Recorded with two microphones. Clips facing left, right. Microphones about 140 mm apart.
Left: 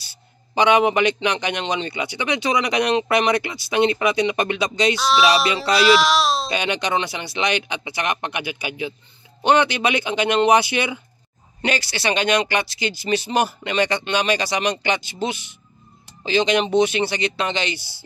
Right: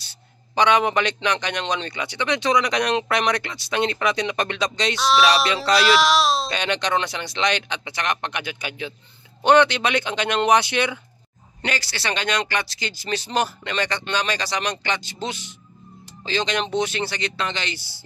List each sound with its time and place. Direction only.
0.6 s a man's voice: 10° left (ahead or behind)
11.6 s a man's voice: 15° left (ahead or behind)